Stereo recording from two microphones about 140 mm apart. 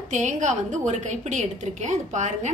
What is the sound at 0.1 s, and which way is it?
A woman's voice, 60° right (ahead or behind).